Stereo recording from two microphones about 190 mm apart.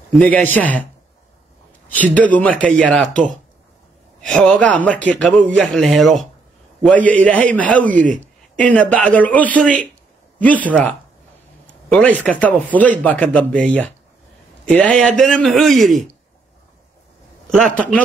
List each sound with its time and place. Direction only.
0.1 s a man's voice: 5° left (ahead or behind)
2.1 s a man's voice: 10° left (ahead or behind)
7.9 s speech: 45° right (ahead or behind)
8.2 s a man's voice: 5° left (ahead or behind)
17.6 s a man's voice: 5° left (ahead or behind)